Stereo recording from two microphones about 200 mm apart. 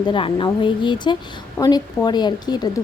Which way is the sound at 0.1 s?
25° left (ahead or behind).